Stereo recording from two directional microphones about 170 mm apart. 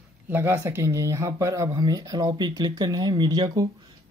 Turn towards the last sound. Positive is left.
turn(degrees=-20)  # may be behind; listen again after turning